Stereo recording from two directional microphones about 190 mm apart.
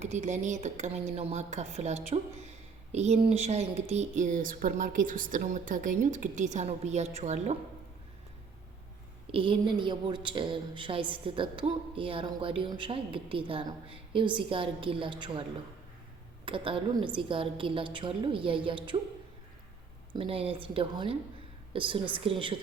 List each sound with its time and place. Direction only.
0.0 s speech: 35° right (ahead or behind)
9.3 s a woman's voice: 25° right (ahead or behind)
16.5 s a woman's voice: 25° right (ahead or behind)
20.1 s a woman's voice: 30° right (ahead or behind)